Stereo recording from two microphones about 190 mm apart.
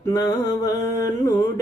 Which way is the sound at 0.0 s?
20° left (ahead or behind).